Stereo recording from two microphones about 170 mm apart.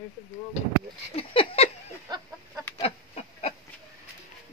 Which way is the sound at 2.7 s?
35° left (ahead or behind).